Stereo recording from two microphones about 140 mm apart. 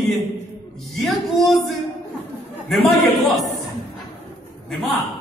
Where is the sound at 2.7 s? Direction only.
Centre (ahead or behind).